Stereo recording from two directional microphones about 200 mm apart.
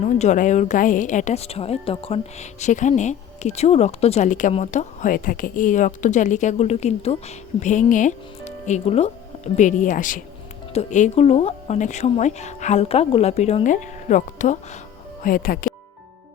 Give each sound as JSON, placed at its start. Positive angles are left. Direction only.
{"t": 0.0, "sound": "speech", "side_deg": 35}